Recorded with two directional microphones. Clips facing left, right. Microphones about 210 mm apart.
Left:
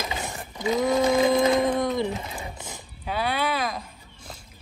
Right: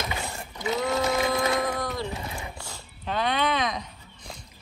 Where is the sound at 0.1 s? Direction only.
20° left (ahead or behind).